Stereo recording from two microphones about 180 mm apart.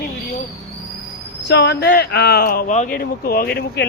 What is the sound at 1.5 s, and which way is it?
Speech, 70° left (ahead or behind).